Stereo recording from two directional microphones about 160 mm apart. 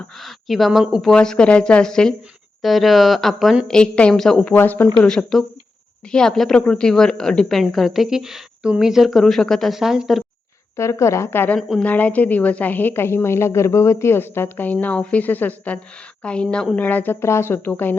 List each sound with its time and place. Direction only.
0.2 s a woman's voice: centre (ahead or behind)
10.8 s a woman's voice: 20° left (ahead or behind)